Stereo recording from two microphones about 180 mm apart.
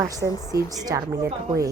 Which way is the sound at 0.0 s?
20° right (ahead or behind).